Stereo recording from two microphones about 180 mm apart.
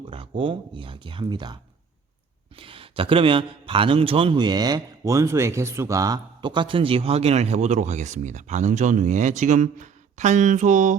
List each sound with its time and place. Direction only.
0.1 s speech: 30° right (ahead or behind)
2.6 s a man's voice: 30° right (ahead or behind)